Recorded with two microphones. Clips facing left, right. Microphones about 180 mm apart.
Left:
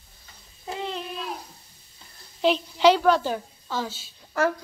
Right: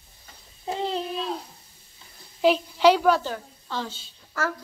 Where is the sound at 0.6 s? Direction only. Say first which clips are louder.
Right 4 dB; 30° right (ahead or behind).